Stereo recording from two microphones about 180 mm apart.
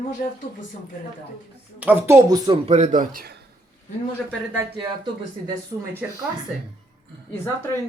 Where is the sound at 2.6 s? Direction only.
40° right (ahead or behind); by 3.4 s 55° right (ahead or behind).